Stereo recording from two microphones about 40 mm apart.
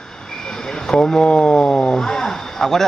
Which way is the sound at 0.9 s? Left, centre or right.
Centre.